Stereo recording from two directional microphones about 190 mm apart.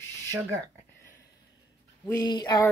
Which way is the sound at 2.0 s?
20° left (ahead or behind).